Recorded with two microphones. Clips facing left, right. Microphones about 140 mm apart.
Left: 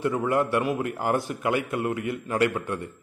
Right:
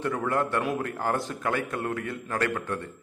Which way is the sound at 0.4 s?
Centre (ahead or behind).